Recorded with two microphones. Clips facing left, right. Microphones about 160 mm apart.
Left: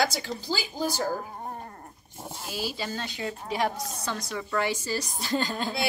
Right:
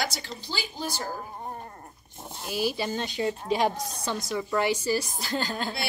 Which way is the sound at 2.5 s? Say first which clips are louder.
Right 5 dB; 20° right (ahead or behind).